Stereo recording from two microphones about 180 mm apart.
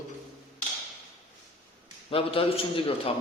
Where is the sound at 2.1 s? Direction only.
30° left (ahead or behind).